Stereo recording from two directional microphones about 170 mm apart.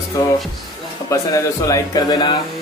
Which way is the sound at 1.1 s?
20° left (ahead or behind).